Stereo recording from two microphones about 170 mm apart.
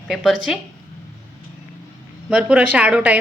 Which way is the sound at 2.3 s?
5° right (ahead or behind).